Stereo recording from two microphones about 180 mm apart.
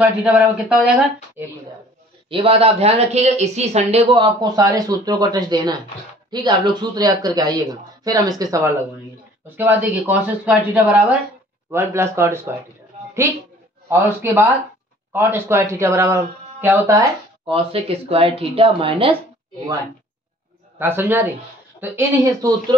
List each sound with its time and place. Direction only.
0.0 s speech: 5° right (ahead or behind)
2.2 s speech: 30° right (ahead or behind)
9.6 s speech: 10° right (ahead or behind)
13.8 s speech: 15° right (ahead or behind)
17.5 s speech: 30° right (ahead or behind)
20.8 s speech: 10° right (ahead or behind)